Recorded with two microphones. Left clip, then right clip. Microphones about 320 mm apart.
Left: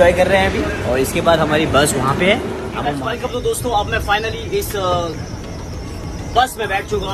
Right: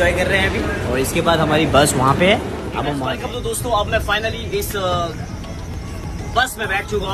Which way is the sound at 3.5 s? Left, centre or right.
Centre.